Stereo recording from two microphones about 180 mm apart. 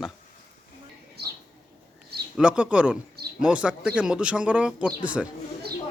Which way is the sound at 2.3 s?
5° right (ahead or behind).